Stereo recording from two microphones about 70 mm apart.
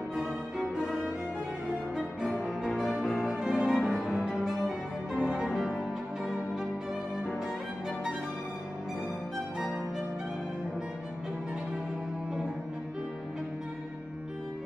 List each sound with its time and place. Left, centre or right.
0.1 s music: centre
2.6 s music: centre